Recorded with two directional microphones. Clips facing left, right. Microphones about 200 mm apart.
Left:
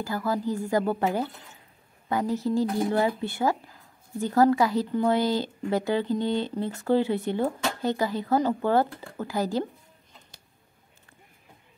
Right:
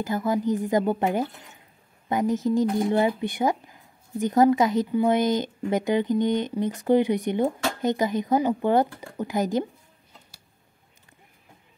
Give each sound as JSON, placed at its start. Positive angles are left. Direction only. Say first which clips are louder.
{"t": 0.0, "sound": "speech", "louder": "right 3 dB", "side_deg": -20}